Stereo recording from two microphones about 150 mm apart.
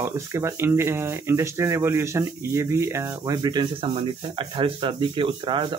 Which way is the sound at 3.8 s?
40° right (ahead or behind).